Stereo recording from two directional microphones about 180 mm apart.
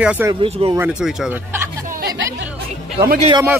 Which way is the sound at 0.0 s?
5° right (ahead or behind).